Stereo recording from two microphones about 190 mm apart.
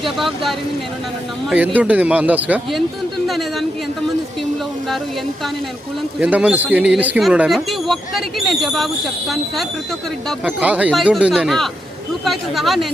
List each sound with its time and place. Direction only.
0.0 s speech: centre (ahead or behind)
6.1 s speech: 5° right (ahead or behind)
10.2 s speech: 5° right (ahead or behind)